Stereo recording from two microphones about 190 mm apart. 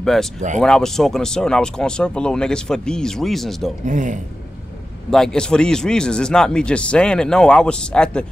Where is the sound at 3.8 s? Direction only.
40° right (ahead or behind).